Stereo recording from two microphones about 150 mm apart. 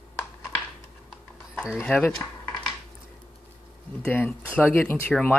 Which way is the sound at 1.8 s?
10° left (ahead or behind).